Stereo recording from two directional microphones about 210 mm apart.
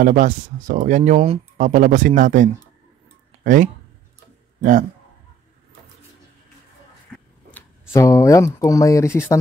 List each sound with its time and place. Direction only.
0.0 s a man's voice: 40° right (ahead or behind)
7.1 s a sound: 5° left (ahead or behind)
7.5 s speech: 15° left (ahead or behind)